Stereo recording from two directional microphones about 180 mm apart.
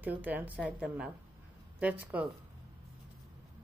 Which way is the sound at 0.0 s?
10° right (ahead or behind).